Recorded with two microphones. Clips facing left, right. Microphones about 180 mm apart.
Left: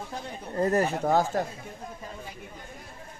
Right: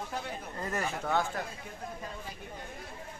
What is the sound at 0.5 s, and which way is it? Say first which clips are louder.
Speech: left 11 dB; 40° left (ahead or behind).